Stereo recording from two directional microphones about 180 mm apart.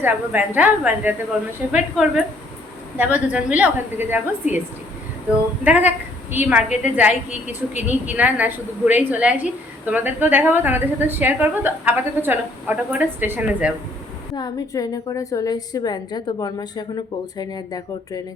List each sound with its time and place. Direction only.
0.0 s a woman's voice: 10° right (ahead or behind)
5.6 s a woman's voice: 10° right (ahead or behind)
14.3 s a woman's voice: 20° left (ahead or behind)